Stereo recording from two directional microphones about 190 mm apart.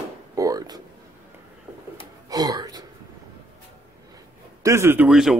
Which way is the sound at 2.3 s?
20° right (ahead or behind).